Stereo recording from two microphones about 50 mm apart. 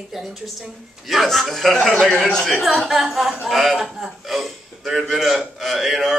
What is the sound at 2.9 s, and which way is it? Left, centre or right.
Speech, centre.